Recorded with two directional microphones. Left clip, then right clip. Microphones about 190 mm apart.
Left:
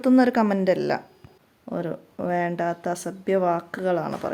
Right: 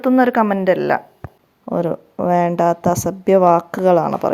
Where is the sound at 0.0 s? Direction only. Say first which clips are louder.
Right 5 dB; 5° right (ahead or behind).